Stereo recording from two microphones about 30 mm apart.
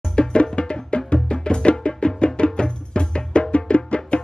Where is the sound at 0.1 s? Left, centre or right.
Left.